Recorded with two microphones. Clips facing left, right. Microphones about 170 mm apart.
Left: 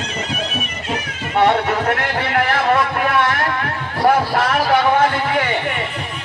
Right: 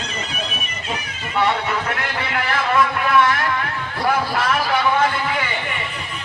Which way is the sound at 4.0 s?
45° left (ahead or behind).